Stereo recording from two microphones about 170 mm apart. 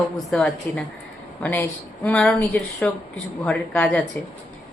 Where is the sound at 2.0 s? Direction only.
5° left (ahead or behind).